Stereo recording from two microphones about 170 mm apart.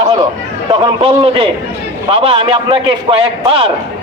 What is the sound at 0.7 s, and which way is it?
A man's voice, 30° right (ahead or behind).